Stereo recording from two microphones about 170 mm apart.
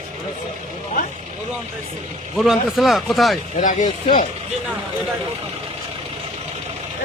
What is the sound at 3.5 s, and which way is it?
Speech, 45° left (ahead or behind).